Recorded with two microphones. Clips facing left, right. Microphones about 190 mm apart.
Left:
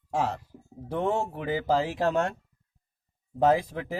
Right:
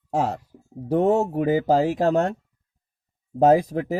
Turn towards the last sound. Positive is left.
turn(degrees=-40)  # may be behind; listen again after turning